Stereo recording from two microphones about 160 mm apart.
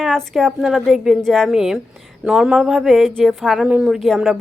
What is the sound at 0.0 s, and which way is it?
Speech, centre (ahead or behind).